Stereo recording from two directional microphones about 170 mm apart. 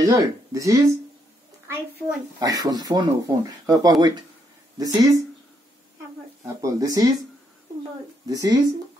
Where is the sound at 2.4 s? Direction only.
20° right (ahead or behind).